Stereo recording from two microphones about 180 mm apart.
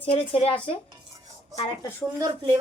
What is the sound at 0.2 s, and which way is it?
Speech, 30° left (ahead or behind).